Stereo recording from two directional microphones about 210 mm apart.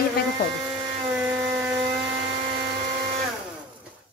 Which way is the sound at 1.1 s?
10° right (ahead or behind).